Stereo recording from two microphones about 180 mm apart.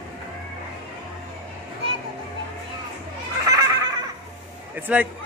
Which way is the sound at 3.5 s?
20° right (ahead or behind).